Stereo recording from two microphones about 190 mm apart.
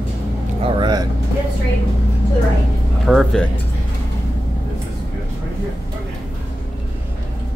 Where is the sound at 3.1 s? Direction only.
Centre (ahead or behind).